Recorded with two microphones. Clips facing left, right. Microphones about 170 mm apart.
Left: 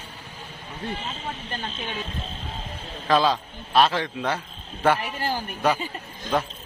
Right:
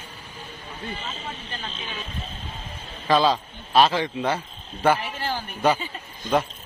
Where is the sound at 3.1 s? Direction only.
Centre (ahead or behind).